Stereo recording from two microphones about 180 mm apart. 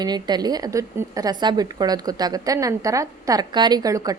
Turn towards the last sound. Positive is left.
turn(degrees=-20)  # may be behind; listen again after turning